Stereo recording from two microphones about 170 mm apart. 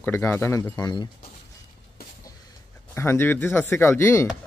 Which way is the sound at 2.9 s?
15° left (ahead or behind).